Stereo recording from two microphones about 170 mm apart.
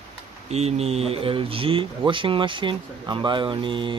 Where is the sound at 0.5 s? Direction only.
40° right (ahead or behind).